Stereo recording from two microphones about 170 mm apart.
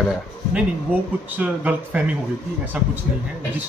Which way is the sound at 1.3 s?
5° right (ahead or behind).